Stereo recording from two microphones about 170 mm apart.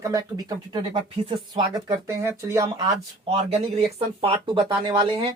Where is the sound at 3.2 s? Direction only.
35° right (ahead or behind).